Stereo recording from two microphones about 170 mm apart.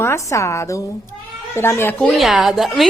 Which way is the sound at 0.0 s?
15° left (ahead or behind).